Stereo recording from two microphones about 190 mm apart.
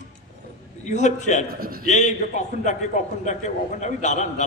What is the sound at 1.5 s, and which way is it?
Speech, 50° right (ahead or behind).